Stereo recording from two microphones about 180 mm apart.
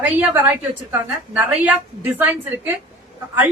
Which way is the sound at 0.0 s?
10° right (ahead or behind).